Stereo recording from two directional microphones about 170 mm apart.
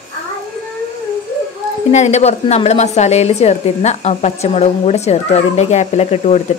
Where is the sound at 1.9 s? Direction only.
40° left (ahead or behind).